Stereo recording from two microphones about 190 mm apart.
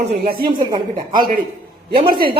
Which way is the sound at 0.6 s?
20° right (ahead or behind).